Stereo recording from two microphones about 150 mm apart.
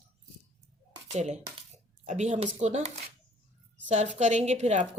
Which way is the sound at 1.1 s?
50° right (ahead or behind).